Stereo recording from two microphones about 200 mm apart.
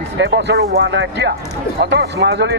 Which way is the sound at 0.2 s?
55° right (ahead or behind).